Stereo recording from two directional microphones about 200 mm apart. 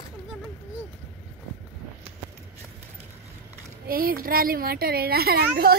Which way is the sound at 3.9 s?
45° right (ahead or behind).